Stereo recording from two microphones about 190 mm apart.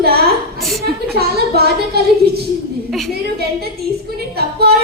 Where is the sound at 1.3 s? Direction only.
55° right (ahead or behind).